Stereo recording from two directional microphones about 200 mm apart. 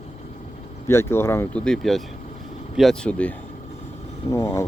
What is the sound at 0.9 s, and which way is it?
Speech, 15° left (ahead or behind).